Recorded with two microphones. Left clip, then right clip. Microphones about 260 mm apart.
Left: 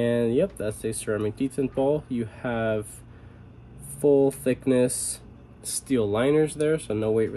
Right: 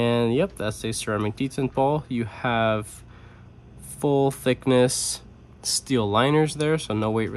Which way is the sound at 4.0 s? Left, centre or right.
Right.